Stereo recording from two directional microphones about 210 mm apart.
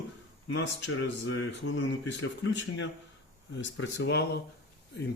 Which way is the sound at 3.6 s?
60° left (ahead or behind).